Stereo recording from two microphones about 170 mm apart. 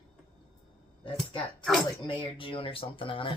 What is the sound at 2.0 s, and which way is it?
Speech, 30° left (ahead or behind).